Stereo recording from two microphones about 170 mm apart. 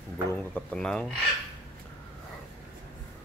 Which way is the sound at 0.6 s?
5° left (ahead or behind).